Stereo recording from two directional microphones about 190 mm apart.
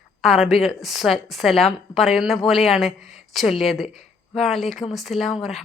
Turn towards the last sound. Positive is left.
turn(degrees=0)  # may be behind; listen again after turning